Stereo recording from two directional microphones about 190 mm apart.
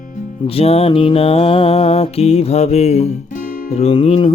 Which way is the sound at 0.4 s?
30° left (ahead or behind).